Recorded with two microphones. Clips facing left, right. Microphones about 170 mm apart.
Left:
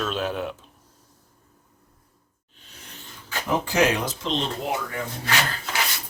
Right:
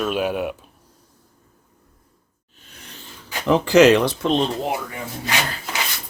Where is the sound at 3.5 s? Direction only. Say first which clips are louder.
Right 9 dB; 90° right; by 4.3 s 70° right (ahead or behind).